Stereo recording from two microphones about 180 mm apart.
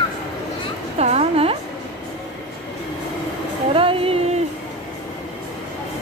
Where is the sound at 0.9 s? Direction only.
35° right (ahead or behind).